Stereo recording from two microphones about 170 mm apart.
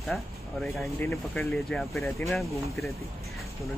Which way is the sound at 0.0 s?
Centre (ahead or behind).